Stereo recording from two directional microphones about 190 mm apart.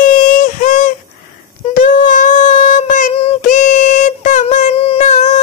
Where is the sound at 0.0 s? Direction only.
45° left (ahead or behind).